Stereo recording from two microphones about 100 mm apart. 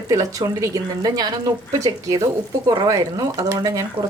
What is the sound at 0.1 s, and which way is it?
A woman's voice, 35° right (ahead or behind).